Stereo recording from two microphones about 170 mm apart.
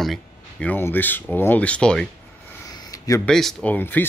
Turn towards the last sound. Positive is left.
turn(degrees=10)  # may be behind; listen again after turning